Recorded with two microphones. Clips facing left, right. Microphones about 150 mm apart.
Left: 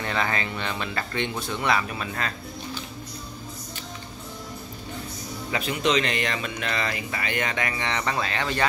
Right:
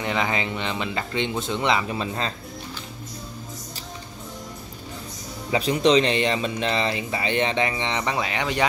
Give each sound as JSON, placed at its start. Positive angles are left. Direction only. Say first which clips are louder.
{"t": 0.0, "sound": "speech", "louder": "right 2 dB", "side_deg": -15}
{"t": 5.5, "sound": "speech", "louder": "right 6 dB", "side_deg": -35}